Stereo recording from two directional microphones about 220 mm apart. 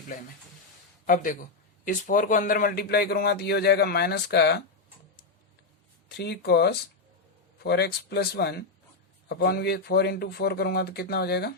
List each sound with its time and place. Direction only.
1.0 s speech: 40° left (ahead or behind)
6.1 s speech: 50° left (ahead or behind)